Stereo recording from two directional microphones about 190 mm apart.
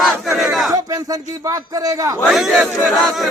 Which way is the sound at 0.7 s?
20° right (ahead or behind).